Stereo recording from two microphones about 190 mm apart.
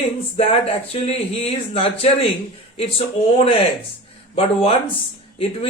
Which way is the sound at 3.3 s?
30° left (ahead or behind).